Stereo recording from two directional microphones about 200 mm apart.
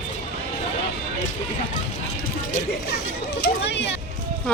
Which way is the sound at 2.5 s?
55° left (ahead or behind).